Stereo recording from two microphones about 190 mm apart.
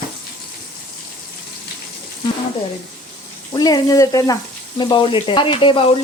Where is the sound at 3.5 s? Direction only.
20° left (ahead or behind).